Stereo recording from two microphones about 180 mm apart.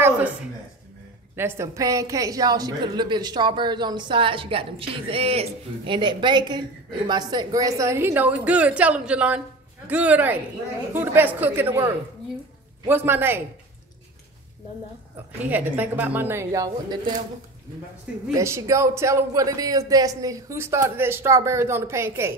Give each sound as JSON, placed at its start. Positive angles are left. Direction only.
{"t": 1.3, "sound": "a woman's voice", "side_deg": -15}
{"t": 15.5, "sound": "speech", "side_deg": -10}
{"t": 18.3, "sound": "speech", "side_deg": -15}